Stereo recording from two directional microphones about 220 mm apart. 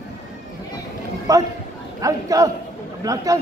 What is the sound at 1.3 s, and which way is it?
Speech, 15° right (ahead or behind).